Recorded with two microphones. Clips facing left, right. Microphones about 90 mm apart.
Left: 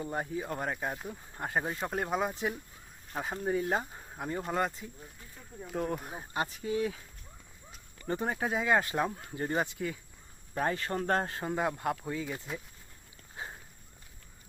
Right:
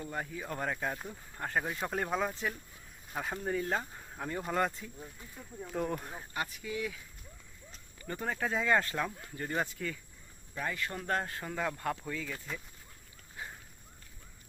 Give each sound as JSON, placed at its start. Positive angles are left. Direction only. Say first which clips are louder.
{"t": 0.0, "sound": "speech", "louder": "left 4 dB", "side_deg": 25}
{"t": 0.4, "sound": "speech", "louder": "left 1 dB", "side_deg": 10}
{"t": 1.8, "sound": "speech", "louder": "left 1 dB", "side_deg": 5}
{"t": 3.2, "sound": "speech", "louder": "left 3 dB", "side_deg": 5}
{"t": 4.4, "sound": "speech", "louder": "even", "side_deg": 5}
{"t": 6.1, "sound": "speech", "louder": "left 4 dB", "side_deg": 25}
{"t": 8.0, "sound": "speech", "louder": "left 3 dB", "side_deg": 25}
{"t": 8.5, "sound": "speech", "louder": "left 2 dB", "side_deg": 5}
{"t": 9.0, "sound": "speech", "louder": "left 5 dB", "side_deg": 30}
{"t": 10.5, "sound": "speech", "louder": "left 5 dB", "side_deg": 40}
{"t": 11.3, "sound": "speech", "louder": "left 4 dB", "side_deg": 25}